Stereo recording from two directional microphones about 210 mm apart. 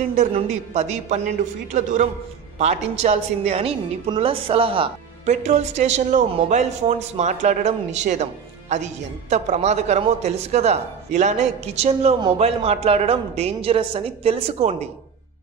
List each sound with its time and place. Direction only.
0.1 s a woman's voice: 35° right (ahead or behind)